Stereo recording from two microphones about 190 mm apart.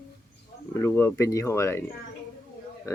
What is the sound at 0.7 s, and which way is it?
Speech, 10° left (ahead or behind).